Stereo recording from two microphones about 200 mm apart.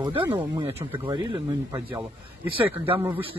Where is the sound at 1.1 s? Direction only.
20° right (ahead or behind).